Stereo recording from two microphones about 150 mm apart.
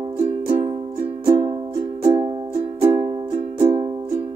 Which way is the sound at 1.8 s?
50° right (ahead or behind).